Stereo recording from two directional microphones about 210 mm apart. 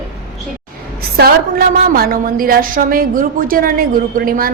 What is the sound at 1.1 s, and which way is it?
A woman's voice, 45° right (ahead or behind).